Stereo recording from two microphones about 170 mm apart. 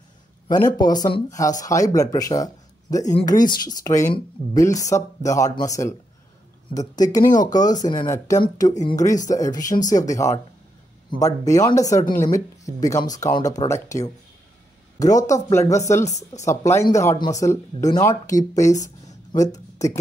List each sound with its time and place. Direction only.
0.5 s speech: 25° left (ahead or behind)
3.0 s a woman's voice: 45° left (ahead or behind)
3.3 s speech: 25° left (ahead or behind)
12.1 s a woman's voice: 50° left (ahead or behind)
12.4 s speech: 20° left (ahead or behind)